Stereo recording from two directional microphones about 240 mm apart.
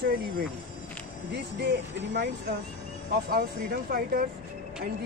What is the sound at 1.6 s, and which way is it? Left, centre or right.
Speech, right.